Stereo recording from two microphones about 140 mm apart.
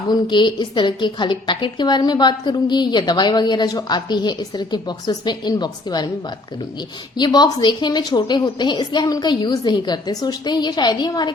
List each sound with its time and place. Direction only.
0.1 s a woman's voice: 35° left (ahead or behind)
7.2 s a woman's voice: 30° left (ahead or behind)